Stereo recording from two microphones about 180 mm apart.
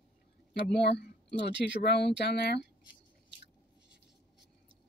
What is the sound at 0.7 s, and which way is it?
Speech, 70° left (ahead or behind).